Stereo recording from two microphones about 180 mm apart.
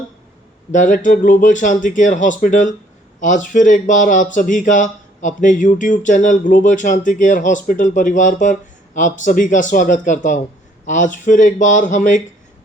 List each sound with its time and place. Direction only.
0.7 s speech: 45° left (ahead or behind)